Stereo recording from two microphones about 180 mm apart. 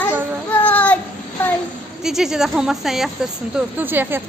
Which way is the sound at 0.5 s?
10° left (ahead or behind).